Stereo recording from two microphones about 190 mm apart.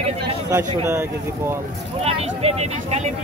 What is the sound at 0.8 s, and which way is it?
Speech, 15° right (ahead or behind).